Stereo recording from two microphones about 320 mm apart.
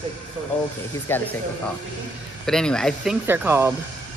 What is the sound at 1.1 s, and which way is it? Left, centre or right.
Speech, centre.